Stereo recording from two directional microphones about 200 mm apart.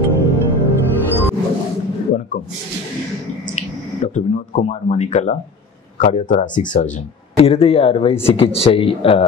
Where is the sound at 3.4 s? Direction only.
35° left (ahead or behind).